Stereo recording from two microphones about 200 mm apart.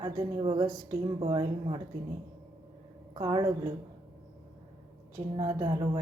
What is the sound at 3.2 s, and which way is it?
Speech, 20° right (ahead or behind).